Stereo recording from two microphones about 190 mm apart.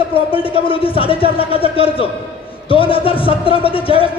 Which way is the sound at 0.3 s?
30° left (ahead or behind).